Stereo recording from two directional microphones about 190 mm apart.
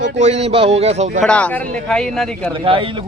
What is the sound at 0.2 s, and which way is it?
Speech, 35° right (ahead or behind).